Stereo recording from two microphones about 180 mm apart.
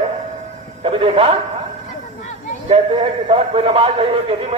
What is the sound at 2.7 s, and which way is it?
A man's voice, 30° right (ahead or behind).